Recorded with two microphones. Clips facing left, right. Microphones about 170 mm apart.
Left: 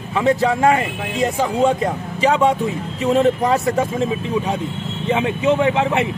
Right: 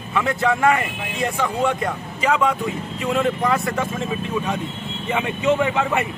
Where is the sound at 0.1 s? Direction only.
25° left (ahead or behind).